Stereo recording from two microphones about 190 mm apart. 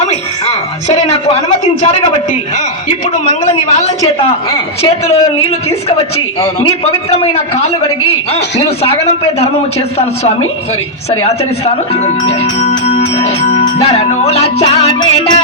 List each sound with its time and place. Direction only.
0.0 s a sound: 35° left (ahead or behind)
2.9 s a sound: 35° left (ahead or behind)
4.5 s speech: 35° left (ahead or behind)
7.1 s speech: 35° left (ahead or behind)
11.1 s speech: 30° left (ahead or behind)
12.7 s music: 30° left (ahead or behind)